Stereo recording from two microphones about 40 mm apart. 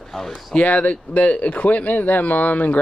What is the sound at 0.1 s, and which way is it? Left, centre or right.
Speech, centre.